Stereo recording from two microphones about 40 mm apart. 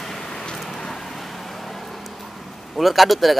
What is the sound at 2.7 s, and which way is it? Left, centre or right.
Speech, centre.